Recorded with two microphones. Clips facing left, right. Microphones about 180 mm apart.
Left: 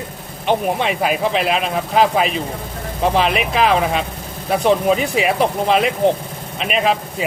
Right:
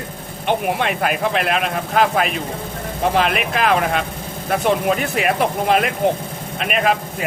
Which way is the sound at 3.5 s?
50° right (ahead or behind).